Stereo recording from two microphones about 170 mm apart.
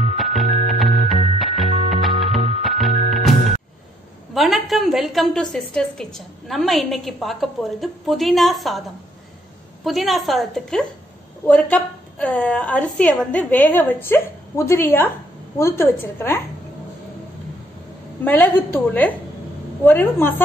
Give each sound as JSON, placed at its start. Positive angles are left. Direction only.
{"t": 0.2, "sound": "music", "side_deg": 0}
{"t": 4.3, "sound": "a woman's voice", "side_deg": 0}
{"t": 9.8, "sound": "a woman's voice", "side_deg": 0}
{"t": 18.2, "sound": "a woman's voice", "side_deg": 10}